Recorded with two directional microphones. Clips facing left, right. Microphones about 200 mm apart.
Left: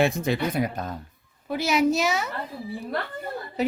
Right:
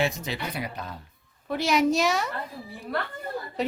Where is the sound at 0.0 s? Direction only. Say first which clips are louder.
Left 6 dB; 55° left (ahead or behind).